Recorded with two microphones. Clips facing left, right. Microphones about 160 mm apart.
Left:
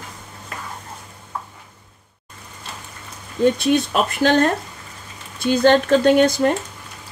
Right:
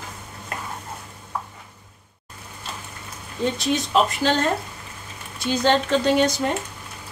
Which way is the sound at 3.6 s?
60° left (ahead or behind).